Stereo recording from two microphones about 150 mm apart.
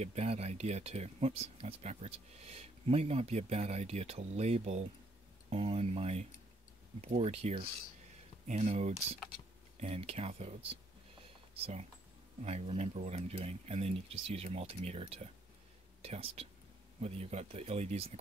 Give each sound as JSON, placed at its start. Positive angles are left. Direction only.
{"t": 0.0, "sound": "speech", "side_deg": -45}